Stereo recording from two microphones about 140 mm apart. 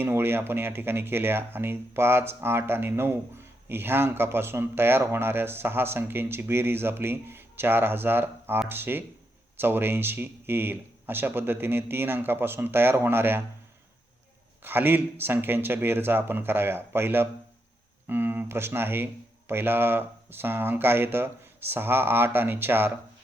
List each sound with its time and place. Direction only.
0.0 s speech: 15° right (ahead or behind)
14.6 s speech: 15° right (ahead or behind)